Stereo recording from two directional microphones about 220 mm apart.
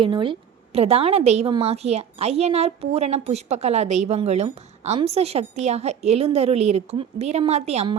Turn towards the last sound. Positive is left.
turn(degrees=-30)  # may be behind; listen again after turning